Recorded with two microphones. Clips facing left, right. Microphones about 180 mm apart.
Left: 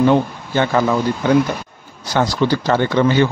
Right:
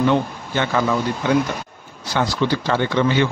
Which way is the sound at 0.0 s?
35° left (ahead or behind).